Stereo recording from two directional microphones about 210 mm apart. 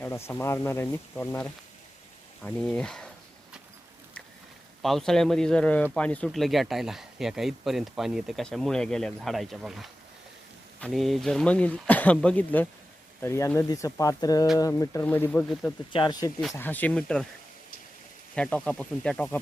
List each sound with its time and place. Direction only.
0.0 s speech: 10° left (ahead or behind)
4.8 s speech: centre (ahead or behind)
15.9 s speech: 20° left (ahead or behind)
16.6 s speech: 10° left (ahead or behind)
18.3 s speech: 5° left (ahead or behind)